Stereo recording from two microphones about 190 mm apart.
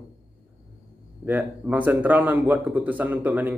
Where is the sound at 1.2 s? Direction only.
10° right (ahead or behind).